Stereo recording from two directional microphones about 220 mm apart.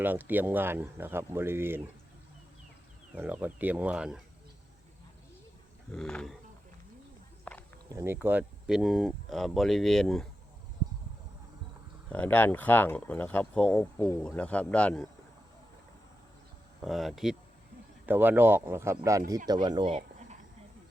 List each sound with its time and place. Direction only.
0.0 s speech: 10° right (ahead or behind)
3.2 s speech: 10° right (ahead or behind)
5.9 s speech: centre (ahead or behind)
7.5 s a sound: 5° left (ahead or behind)
7.9 s speech: 10° right (ahead or behind)
12.0 s speech: 5° left (ahead or behind)
16.8 s speech: centre (ahead or behind); by 19.9 s 20° right (ahead or behind)
19.9 s cricket: 35° right (ahead or behind)